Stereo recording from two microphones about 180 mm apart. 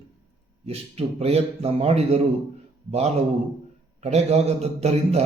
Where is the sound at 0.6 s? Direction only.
35° right (ahead or behind).